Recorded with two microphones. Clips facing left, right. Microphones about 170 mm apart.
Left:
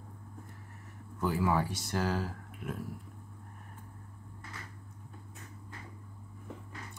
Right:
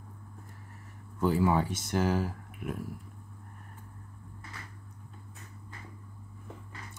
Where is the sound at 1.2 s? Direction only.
25° right (ahead or behind).